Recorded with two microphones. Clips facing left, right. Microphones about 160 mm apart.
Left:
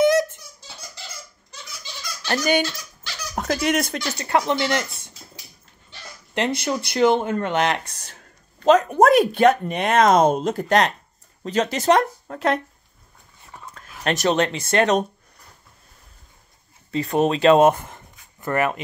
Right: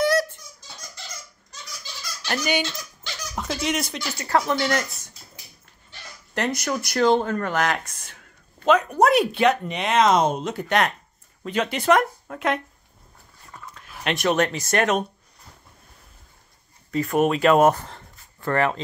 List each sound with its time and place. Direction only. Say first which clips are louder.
0.0 s a sound: left 4 dB; 20° left (ahead or behind)
2.2 s speech: left 4 dB; 40° left (ahead or behind)
3.3 s speech: left 5 dB; 50° left (ahead or behind)
4.3 s speech: left 1 dB; 20° left (ahead or behind)
6.3 s speech: left 2 dB; 25° left (ahead or behind)
13.7 s dog: left 3 dB; 40° left (ahead or behind)
14.3 s speech: even; 30° left (ahead or behind)
16.9 s speech: even; 30° left (ahead or behind); by 18.7 s 15° left (ahead or behind)